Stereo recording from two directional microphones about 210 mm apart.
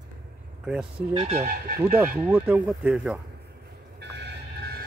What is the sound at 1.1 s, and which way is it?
Speech, 30° right (ahead or behind).